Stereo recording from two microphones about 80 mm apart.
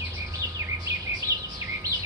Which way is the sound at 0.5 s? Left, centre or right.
Right.